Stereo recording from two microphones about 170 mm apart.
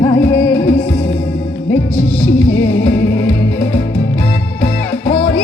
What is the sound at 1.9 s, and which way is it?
Music, 10° left (ahead or behind).